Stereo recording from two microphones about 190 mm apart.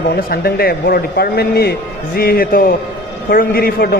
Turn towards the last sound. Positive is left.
turn(degrees=55)  # may be behind; listen again after turning